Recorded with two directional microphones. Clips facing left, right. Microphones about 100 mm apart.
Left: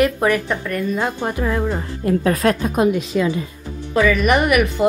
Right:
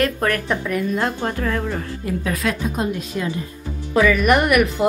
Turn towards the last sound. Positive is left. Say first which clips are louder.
# even
turn(degrees=0)  # may be behind; listen again after turning